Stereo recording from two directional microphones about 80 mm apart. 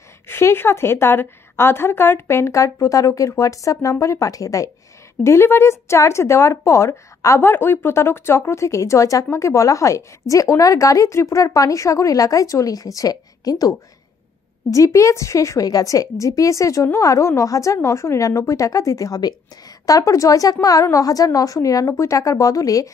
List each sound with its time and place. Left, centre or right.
0.3 s a woman's voice: left
5.2 s a woman's voice: left